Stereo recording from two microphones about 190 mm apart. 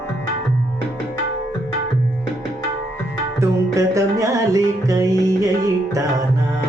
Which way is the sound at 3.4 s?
15° right (ahead or behind).